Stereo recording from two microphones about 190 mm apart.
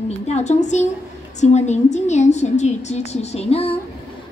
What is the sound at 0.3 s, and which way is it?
A woman's voice, 35° left (ahead or behind).